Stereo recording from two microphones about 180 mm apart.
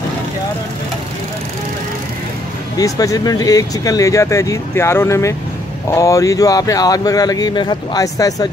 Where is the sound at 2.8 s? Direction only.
20° left (ahead or behind).